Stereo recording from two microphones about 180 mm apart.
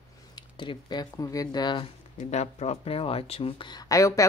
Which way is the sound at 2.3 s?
40° left (ahead or behind).